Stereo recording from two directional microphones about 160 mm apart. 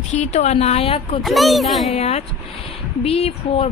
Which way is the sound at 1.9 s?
40° left (ahead or behind).